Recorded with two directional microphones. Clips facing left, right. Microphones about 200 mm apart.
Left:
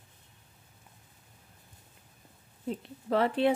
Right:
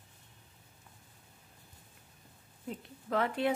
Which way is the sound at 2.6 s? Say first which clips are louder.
Left 6 dB; 30° left (ahead or behind).